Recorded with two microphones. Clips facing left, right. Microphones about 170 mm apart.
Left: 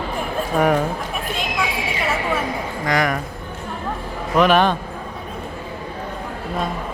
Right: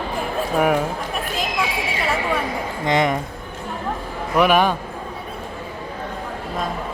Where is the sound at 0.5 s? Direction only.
5° right (ahead or behind).